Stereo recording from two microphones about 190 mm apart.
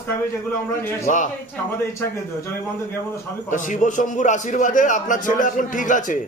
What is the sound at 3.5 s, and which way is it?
A man's voice, 40° left (ahead or behind).